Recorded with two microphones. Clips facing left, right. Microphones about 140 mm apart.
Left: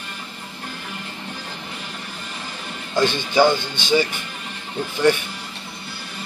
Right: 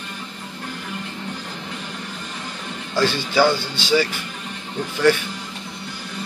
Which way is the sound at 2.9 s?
20° left (ahead or behind).